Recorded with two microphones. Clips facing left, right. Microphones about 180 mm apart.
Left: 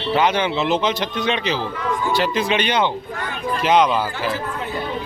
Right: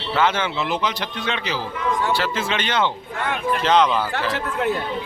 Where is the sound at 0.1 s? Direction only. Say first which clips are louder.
Left 3 dB; 15° left (ahead or behind).